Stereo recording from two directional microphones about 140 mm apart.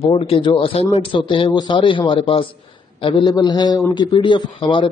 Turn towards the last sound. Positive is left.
turn(degrees=35)  # may be behind; listen again after turning